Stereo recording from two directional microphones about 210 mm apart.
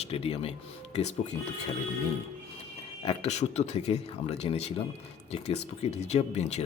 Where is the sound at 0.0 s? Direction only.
30° left (ahead or behind).